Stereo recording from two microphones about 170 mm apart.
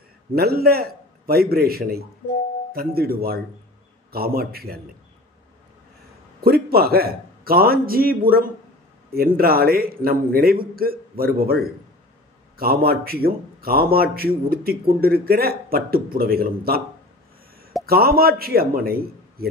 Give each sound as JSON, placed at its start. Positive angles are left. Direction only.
{"t": 0.3, "sound": "a man's voice", "side_deg": -65}
{"t": 6.4, "sound": "a man's voice", "side_deg": -65}
{"t": 17.8, "sound": "a man's voice", "side_deg": -65}